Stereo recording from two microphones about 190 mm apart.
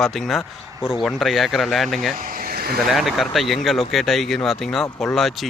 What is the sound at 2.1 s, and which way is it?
Speech, 45° right (ahead or behind).